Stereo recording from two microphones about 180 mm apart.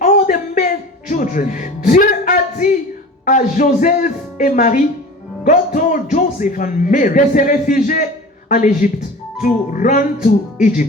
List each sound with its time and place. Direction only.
0.0 s music: 45° left (ahead or behind)
3.2 s a man's voice: 45° left (ahead or behind)